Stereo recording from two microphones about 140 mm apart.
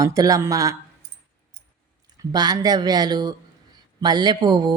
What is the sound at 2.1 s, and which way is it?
Speech, 30° right (ahead or behind).